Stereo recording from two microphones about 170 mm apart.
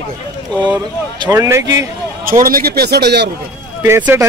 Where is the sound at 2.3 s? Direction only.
55° right (ahead or behind); by 3.3 s 75° right (ahead or behind).